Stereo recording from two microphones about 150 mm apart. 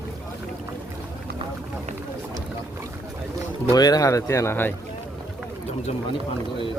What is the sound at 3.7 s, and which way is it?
Speech, 25° left (ahead or behind).